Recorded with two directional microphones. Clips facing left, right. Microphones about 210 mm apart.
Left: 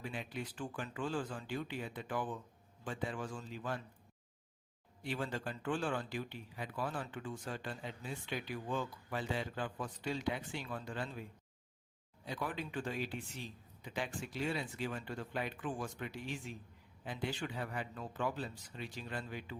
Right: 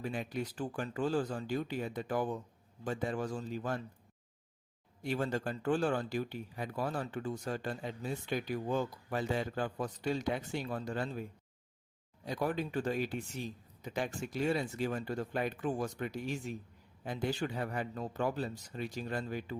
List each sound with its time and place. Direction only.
0.0 s speech: 45° right (ahead or behind)
5.0 s speech: 45° right (ahead or behind)
12.2 s speech: 40° right (ahead or behind)